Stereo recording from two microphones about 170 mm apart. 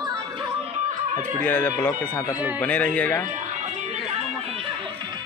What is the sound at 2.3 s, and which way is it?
Speech, 10° right (ahead or behind).